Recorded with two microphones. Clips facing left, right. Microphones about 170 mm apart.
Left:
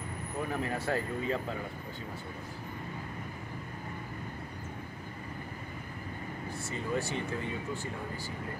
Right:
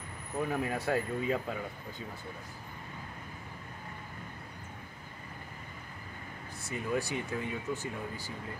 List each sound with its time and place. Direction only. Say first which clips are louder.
0.5 s speech: right 1 dB; 10° right (ahead or behind)
6.7 s speech: right 1 dB; 15° right (ahead or behind)